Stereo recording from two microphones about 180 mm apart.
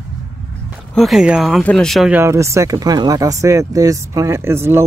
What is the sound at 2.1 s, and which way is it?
Speech, 15° right (ahead or behind).